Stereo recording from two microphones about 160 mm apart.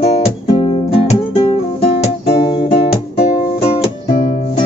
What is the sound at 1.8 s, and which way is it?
Guitar, 35° left (ahead or behind).